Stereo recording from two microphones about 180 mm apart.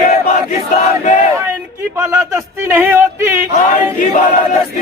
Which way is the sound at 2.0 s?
15° right (ahead or behind).